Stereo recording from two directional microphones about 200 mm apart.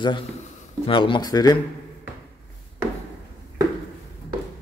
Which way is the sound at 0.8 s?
25° left (ahead or behind).